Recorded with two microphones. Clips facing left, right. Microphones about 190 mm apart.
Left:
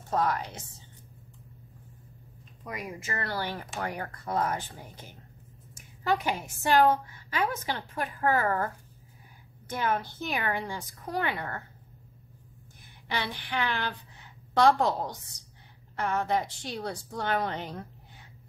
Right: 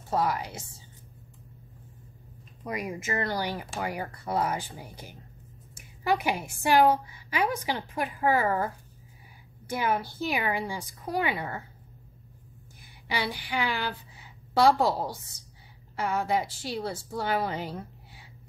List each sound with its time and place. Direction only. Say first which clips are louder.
0.1 s a woman's voice: right 1 dB; 10° right (ahead or behind)
2.6 s a woman's voice: right 5 dB; 20° right (ahead or behind)
13.1 s a woman's voice: right 2 dB; 10° right (ahead or behind)